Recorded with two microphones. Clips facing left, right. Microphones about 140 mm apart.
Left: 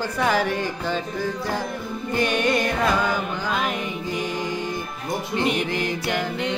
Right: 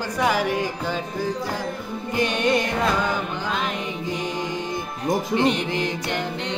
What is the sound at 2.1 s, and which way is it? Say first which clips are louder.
Music: even; 20° right (ahead or behind).